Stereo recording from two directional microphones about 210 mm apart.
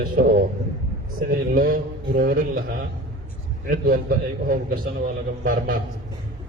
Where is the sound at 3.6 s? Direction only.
40° right (ahead or behind).